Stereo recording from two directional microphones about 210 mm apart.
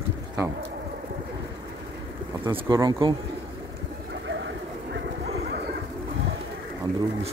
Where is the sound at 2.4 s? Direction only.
20° right (ahead or behind).